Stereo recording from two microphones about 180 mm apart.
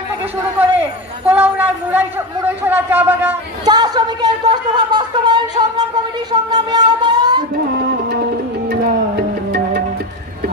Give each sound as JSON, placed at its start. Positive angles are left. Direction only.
{"t": 0.6, "sound": "a man's voice", "side_deg": -10}
{"t": 3.7, "sound": "speech", "side_deg": -20}
{"t": 6.5, "sound": "a sound", "side_deg": -25}
{"t": 8.1, "sound": "music", "side_deg": -60}